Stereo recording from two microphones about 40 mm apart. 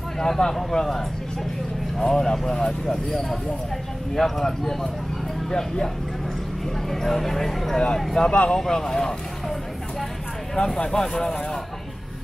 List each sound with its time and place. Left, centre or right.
0.2 s speech: centre
6.9 s speech: centre
8.3 s speech: left
8.5 s speech: centre
10.5 s speech: centre